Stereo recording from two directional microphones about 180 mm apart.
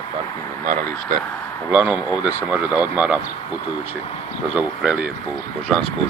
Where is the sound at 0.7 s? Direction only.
55° right (ahead or behind).